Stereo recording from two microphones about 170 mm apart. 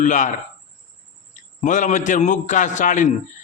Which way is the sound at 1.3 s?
45° left (ahead or behind).